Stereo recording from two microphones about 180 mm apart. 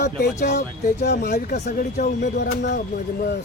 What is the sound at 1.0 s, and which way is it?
Speech, 65° left (ahead or behind).